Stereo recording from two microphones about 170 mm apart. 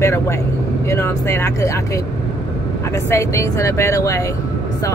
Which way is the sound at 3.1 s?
15° left (ahead or behind).